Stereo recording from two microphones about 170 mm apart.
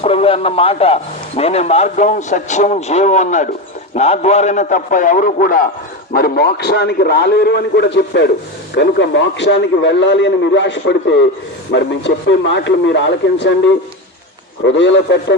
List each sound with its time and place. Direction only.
0.0 s a man's voice: 35° left (ahead or behind); by 5.6 s 55° left (ahead or behind)
6.1 s a man's voice: 65° left (ahead or behind); by 13.6 s 90° left
14.6 s a man's voice: 90° left